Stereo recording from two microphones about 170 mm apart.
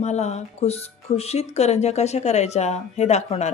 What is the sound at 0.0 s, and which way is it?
Speech, 40° left (ahead or behind).